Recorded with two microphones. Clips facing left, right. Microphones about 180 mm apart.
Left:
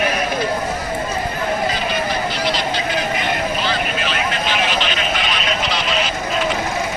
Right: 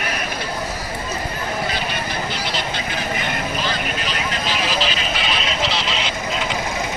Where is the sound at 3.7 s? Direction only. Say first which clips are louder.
Left 3 dB; 40° right (ahead or behind).